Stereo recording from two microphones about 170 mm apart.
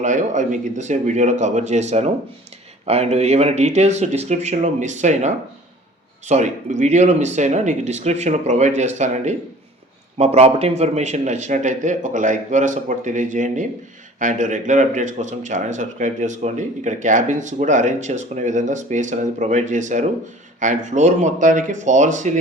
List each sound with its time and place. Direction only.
0.0 s speech: 45° right (ahead or behind)